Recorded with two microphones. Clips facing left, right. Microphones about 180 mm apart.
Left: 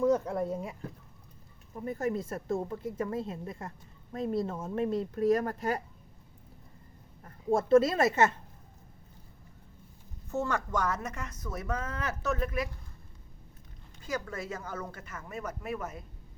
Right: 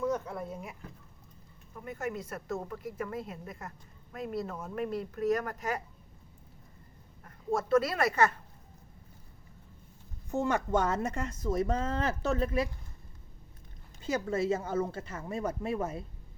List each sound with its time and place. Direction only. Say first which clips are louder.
0.0 s a woman's voice: left 6 dB; 30° left (ahead or behind)
7.3 s speech: left 4 dB; 25° left (ahead or behind)
10.2 s a woman's voice: right 2 dB; 15° right (ahead or behind)
14.0 s a woman's voice: right 6 dB; 25° right (ahead or behind)